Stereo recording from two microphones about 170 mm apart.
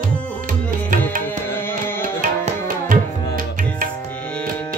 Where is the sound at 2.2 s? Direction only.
55° right (ahead or behind).